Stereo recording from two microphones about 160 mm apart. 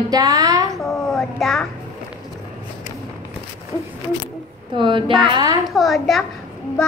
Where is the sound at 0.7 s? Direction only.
Centre (ahead or behind).